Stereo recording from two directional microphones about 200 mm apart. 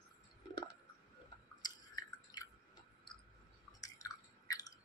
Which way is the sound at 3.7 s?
15° left (ahead or behind).